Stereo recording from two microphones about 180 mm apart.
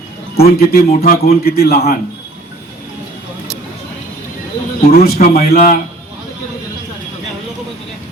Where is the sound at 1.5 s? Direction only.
60° left (ahead or behind).